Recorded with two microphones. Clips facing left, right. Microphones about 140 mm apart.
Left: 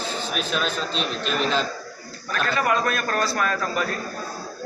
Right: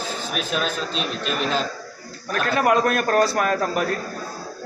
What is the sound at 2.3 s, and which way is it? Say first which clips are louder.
A man's voice: right 4 dB; 55° right (ahead or behind).